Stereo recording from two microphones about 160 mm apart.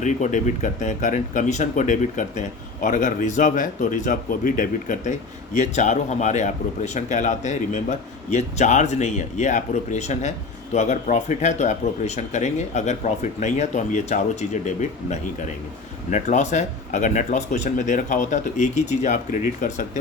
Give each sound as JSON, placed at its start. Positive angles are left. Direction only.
{"t": 0.0, "sound": "a man's voice", "side_deg": 50}